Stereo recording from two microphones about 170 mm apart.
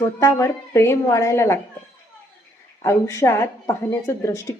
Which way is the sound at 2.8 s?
20° left (ahead or behind).